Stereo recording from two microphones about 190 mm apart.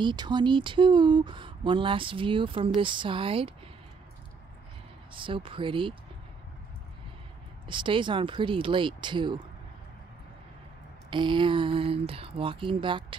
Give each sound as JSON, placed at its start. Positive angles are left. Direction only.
{"t": 0.0, "sound": "speech", "side_deg": -25}
{"t": 5.1, "sound": "speech", "side_deg": -25}
{"t": 7.6, "sound": "speech", "side_deg": -25}
{"t": 11.1, "sound": "speech", "side_deg": -25}